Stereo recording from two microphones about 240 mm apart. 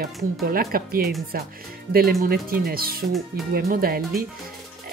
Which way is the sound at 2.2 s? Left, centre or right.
Right.